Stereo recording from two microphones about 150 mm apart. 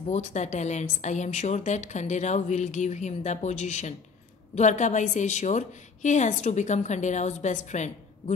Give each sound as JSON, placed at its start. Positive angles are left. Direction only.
{"t": 0.0, "sound": "a woman's voice", "side_deg": 50}